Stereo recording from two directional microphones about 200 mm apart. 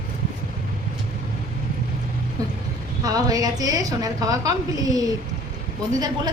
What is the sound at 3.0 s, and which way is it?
A woman's voice, 20° right (ahead or behind).